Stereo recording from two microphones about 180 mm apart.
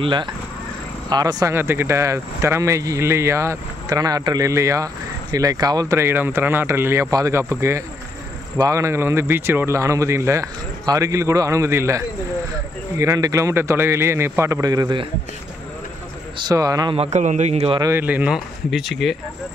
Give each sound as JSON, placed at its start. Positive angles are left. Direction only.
{"t": 0.0, "sound": "speech", "side_deg": -25}
{"t": 16.3, "sound": "speech", "side_deg": -20}
{"t": 16.9, "sound": "a man's voice", "side_deg": -35}
{"t": 17.7, "sound": "speech", "side_deg": -15}